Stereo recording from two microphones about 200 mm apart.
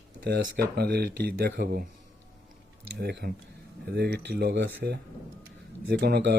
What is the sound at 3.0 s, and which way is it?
Speech, 55° right (ahead or behind).